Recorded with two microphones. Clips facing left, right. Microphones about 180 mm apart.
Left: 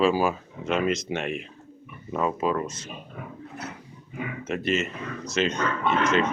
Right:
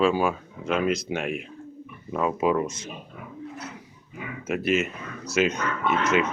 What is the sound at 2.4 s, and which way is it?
Speech, 15° right (ahead or behind).